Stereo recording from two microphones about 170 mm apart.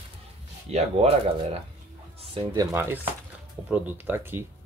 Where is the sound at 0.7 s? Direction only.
40° right (ahead or behind).